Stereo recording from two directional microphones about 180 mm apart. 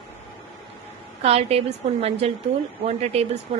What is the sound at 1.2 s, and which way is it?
A woman's voice, 35° right (ahead or behind).